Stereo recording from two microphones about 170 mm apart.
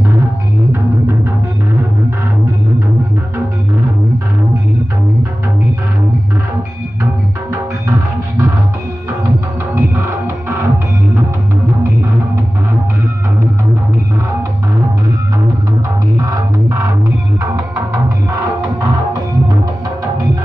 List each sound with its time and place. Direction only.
9.8 s music: 15° right (ahead or behind)
16.2 s music: 20° right (ahead or behind)